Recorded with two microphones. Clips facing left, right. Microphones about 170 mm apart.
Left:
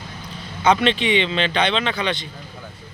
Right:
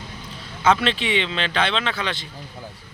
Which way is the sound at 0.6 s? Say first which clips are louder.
Left 2 dB; 5° right (ahead or behind).